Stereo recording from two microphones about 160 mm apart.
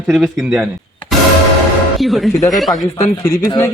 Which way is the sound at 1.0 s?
35° left (ahead or behind).